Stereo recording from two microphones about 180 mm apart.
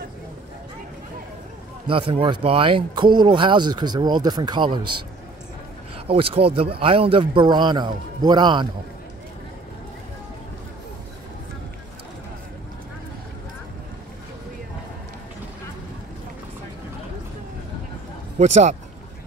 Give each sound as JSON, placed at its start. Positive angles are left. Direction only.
{"t": 1.9, "sound": "speech", "side_deg": -30}
{"t": 6.0, "sound": "speech", "side_deg": -30}
{"t": 18.4, "sound": "speech", "side_deg": -40}